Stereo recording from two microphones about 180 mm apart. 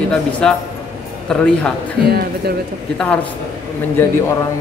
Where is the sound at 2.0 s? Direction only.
60° right (ahead or behind).